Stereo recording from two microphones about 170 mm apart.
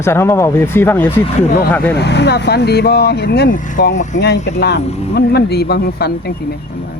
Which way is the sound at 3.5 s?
50° left (ahead or behind).